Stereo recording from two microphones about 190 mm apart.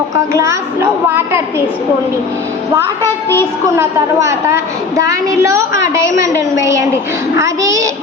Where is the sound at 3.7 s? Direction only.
15° right (ahead or behind).